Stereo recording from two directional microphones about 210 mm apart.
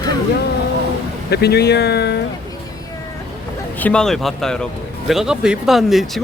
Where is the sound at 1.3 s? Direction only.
50° left (ahead or behind).